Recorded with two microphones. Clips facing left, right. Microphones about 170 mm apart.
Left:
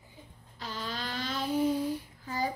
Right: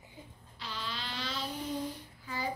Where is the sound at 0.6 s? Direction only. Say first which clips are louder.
Left 4 dB; 45° left (ahead or behind).